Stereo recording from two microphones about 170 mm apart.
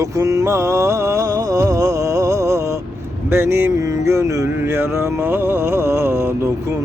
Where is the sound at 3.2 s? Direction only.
15° right (ahead or behind).